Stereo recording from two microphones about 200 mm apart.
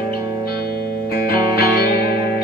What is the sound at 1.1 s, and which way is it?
Music, 50° left (ahead or behind).